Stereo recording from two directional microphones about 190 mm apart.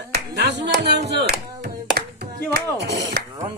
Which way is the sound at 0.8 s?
60° right (ahead or behind).